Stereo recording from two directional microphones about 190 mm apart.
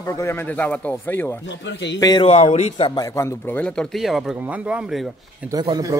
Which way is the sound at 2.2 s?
35° left (ahead or behind).